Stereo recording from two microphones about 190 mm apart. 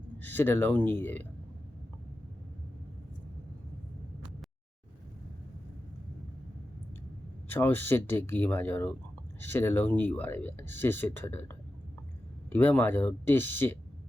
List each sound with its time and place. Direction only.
0.2 s speech: 10° left (ahead or behind)
7.4 s speech: 10° left (ahead or behind)